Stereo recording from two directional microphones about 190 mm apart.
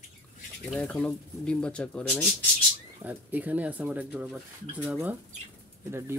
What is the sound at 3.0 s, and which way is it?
Speech, 10° right (ahead or behind).